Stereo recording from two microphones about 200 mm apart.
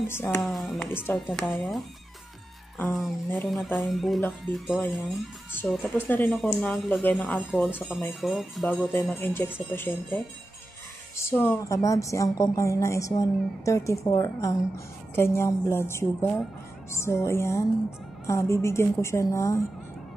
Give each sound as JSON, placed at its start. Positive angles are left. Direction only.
{"t": 0.1, "sound": "a woman's voice", "side_deg": 10}
{"t": 0.4, "sound": "speech", "side_deg": 0}
{"t": 3.3, "sound": "a woman's voice", "side_deg": 0}